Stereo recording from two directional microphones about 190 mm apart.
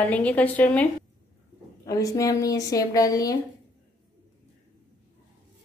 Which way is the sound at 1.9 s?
15° left (ahead or behind).